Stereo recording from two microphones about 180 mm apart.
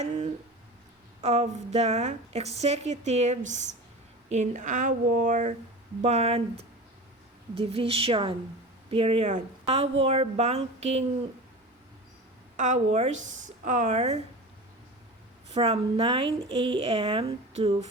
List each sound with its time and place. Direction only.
0.0 s a sound: 40° right (ahead or behind)
1.2 s a woman's voice: 35° right (ahead or behind)
12.5 s a woman's voice: 45° right (ahead or behind)
15.5 s a woman's voice: 35° right (ahead or behind)